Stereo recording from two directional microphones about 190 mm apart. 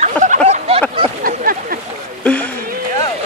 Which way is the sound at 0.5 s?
30° right (ahead or behind).